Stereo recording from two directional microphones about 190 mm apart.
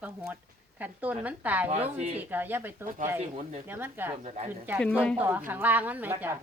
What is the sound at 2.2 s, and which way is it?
Speech, 10° right (ahead or behind).